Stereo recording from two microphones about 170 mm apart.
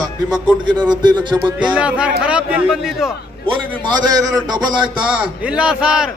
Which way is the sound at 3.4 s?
25° right (ahead or behind).